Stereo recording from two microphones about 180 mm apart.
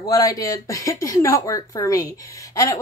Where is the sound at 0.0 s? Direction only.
20° left (ahead or behind).